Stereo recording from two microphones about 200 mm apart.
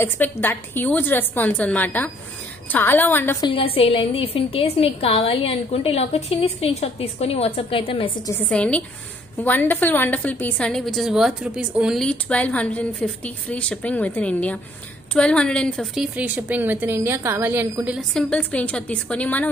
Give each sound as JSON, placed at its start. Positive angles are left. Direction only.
{"t": 0.0, "sound": "a woman's voice", "side_deg": 10}
{"t": 3.4, "sound": "a woman's voice", "side_deg": 30}
{"t": 8.3, "sound": "a woman's voice", "side_deg": 5}